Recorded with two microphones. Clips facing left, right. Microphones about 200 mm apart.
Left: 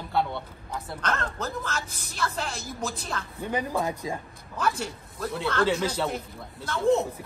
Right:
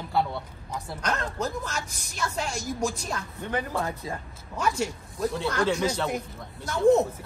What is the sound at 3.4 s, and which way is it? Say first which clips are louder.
Speech: left 1 dB; 15° left (ahead or behind).